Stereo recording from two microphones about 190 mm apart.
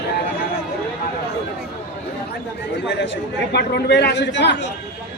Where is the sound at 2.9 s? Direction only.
70° left (ahead or behind).